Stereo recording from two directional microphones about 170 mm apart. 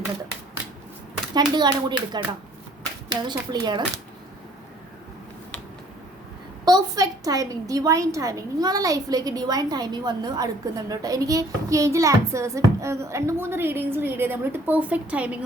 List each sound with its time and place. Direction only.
1.3 s a woman's voice: 25° right (ahead or behind)
3.2 s a woman's voice: 25° right (ahead or behind)
6.7 s a woman's voice: 20° right (ahead or behind)